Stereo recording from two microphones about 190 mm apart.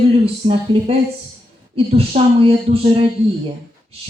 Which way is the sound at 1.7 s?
35° right (ahead or behind).